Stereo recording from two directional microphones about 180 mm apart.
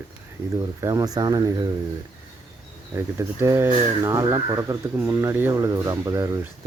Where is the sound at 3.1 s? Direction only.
15° right (ahead or behind).